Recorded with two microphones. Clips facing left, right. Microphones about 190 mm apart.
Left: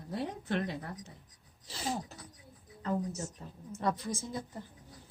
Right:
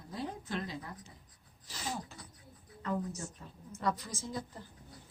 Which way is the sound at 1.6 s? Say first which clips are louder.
Left 4 dB; 30° left (ahead or behind).